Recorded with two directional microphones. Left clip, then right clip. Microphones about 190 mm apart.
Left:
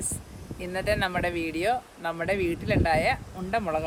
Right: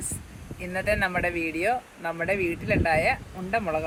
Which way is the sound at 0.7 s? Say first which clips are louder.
Right 1 dB; 5° left (ahead or behind).